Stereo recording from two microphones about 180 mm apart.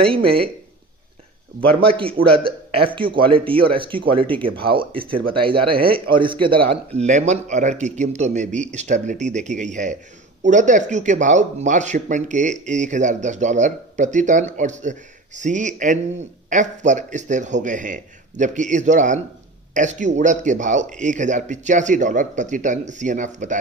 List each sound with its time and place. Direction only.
0.1 s speech: 30° right (ahead or behind)
1.7 s a man's voice: 30° right (ahead or behind)